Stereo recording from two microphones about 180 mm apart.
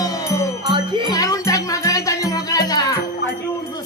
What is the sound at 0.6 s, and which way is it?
Music, 30° right (ahead or behind).